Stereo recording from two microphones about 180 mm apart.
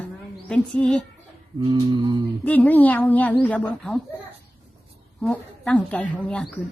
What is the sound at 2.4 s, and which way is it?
A woman's voice, 10° left (ahead or behind).